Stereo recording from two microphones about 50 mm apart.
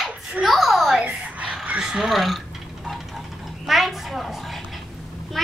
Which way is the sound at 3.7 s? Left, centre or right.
Centre.